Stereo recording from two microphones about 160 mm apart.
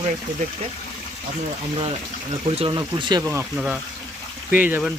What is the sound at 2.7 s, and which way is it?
Speech, 25° right (ahead or behind).